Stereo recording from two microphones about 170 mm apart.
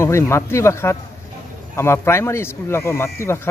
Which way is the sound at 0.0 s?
15° left (ahead or behind).